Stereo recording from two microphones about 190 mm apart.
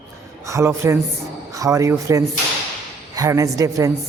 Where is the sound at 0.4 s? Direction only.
15° right (ahead or behind).